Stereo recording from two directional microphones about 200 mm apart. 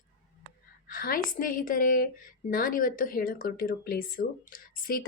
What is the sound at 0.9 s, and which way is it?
Speech, 45° left (ahead or behind).